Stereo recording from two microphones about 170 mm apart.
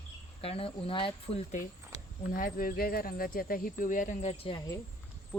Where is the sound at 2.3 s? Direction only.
55° left (ahead or behind); by 4.6 s 35° left (ahead or behind).